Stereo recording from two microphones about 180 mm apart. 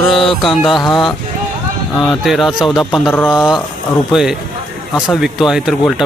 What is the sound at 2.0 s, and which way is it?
A man's voice, centre (ahead or behind).